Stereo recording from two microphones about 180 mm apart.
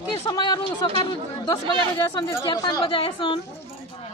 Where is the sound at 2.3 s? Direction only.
20° left (ahead or behind).